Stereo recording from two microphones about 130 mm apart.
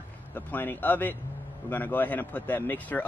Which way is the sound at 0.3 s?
15° left (ahead or behind).